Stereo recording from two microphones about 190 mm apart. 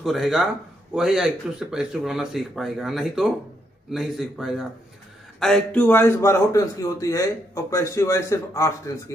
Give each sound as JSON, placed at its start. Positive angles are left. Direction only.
{"t": 0.0, "sound": "a man's voice", "side_deg": 0}